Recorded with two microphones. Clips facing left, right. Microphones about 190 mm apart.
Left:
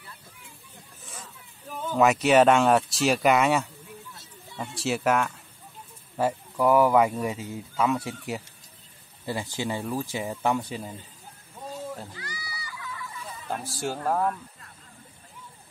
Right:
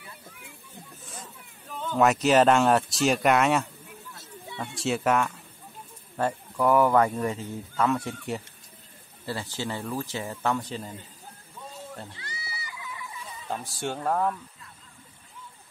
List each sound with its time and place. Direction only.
1.9 s speech: centre (ahead or behind)
9.2 s speech: 15° left (ahead or behind)
12.2 s children playing: 25° right (ahead or behind)
13.5 s speech: centre (ahead or behind)